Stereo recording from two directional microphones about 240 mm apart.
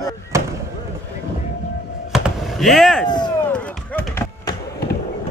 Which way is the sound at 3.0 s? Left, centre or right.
Centre.